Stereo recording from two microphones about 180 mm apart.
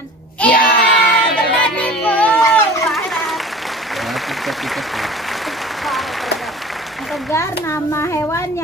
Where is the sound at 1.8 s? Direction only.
5° left (ahead or behind).